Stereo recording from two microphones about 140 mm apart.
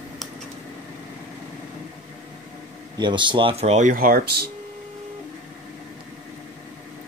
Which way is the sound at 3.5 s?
50° right (ahead or behind).